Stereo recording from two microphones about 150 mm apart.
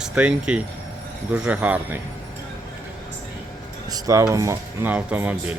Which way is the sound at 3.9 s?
25° right (ahead or behind).